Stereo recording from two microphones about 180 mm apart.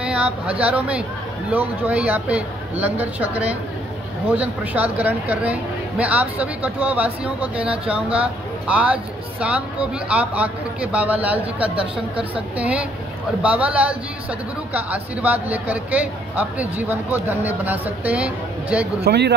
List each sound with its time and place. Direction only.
0.0 s a woman's voice: 5° right (ahead or behind)
11.7 s speech: 30° right (ahead or behind)
12.5 s a woman's voice: 5° right (ahead or behind)
19.0 s speech: 70° right (ahead or behind)